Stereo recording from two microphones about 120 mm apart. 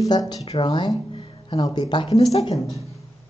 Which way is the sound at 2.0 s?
60° left (ahead or behind).